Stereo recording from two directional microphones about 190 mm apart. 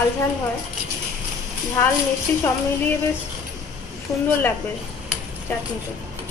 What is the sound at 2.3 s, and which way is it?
Speech, 10° left (ahead or behind).